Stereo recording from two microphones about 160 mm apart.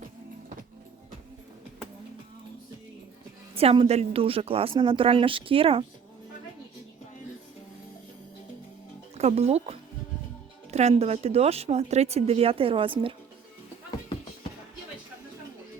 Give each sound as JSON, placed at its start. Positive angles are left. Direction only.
{"t": 3.5, "sound": "speech", "side_deg": -40}
{"t": 9.1, "sound": "speech", "side_deg": -40}